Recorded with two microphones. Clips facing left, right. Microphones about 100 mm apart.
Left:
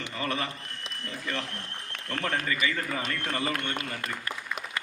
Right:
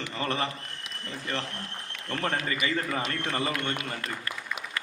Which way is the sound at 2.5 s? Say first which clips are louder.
Even; 30° right (ahead or behind).